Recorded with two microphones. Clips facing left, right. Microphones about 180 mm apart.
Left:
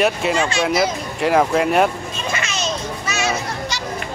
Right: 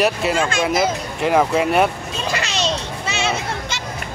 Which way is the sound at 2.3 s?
30° right (ahead or behind).